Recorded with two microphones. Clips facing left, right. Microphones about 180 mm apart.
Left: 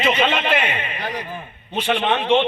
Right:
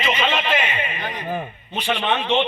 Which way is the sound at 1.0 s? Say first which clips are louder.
Left 3 dB; 35° left (ahead or behind).